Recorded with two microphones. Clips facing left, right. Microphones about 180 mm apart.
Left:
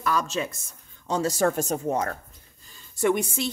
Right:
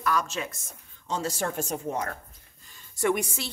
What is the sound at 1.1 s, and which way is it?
Speech, 40° left (ahead or behind).